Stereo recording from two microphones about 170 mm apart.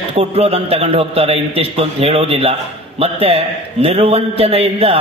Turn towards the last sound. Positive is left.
turn(degrees=-35)  # may be behind; listen again after turning